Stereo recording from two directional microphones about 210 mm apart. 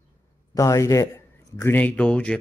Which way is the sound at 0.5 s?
15° left (ahead or behind).